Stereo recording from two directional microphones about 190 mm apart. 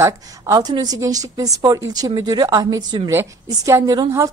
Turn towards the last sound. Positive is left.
turn(degrees=-20)  # may be behind; listen again after turning